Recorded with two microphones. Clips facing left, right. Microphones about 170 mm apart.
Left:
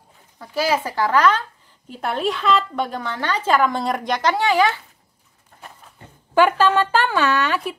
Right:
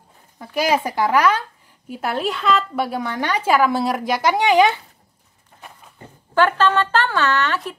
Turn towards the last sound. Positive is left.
turn(degrees=10)  # may be behind; listen again after turning